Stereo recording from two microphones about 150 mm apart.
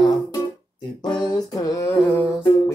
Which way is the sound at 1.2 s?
25° left (ahead or behind).